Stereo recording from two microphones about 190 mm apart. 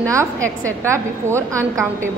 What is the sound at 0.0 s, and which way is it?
A woman's voice, 15° right (ahead or behind).